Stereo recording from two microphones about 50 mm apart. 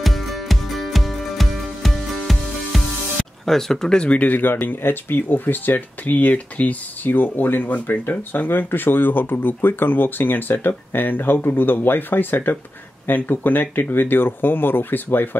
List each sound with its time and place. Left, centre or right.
0.0 s music: centre
4.0 s speech: left